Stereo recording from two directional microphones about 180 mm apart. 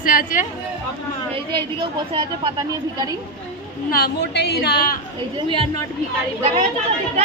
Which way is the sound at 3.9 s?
65° left (ahead or behind).